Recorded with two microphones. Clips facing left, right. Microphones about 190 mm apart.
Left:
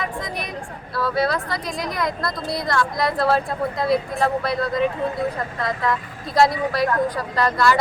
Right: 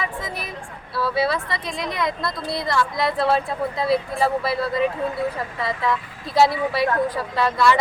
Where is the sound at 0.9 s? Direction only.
5° right (ahead or behind).